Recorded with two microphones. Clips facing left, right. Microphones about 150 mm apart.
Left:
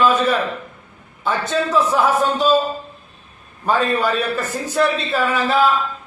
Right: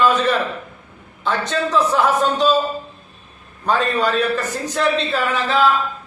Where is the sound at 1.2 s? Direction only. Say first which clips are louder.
Left 1 dB; 10° left (ahead or behind).